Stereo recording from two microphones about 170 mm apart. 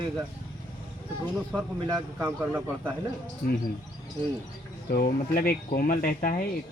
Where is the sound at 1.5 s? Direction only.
10° left (ahead or behind).